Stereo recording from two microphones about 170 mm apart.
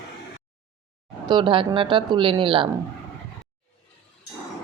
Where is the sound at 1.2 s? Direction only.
30° right (ahead or behind).